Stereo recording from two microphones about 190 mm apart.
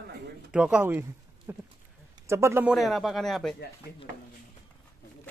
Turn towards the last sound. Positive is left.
turn(degrees=0)  # may be behind; listen again after turning